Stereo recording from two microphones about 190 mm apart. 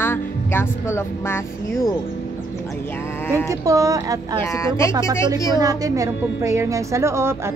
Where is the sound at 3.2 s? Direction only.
10° left (ahead or behind).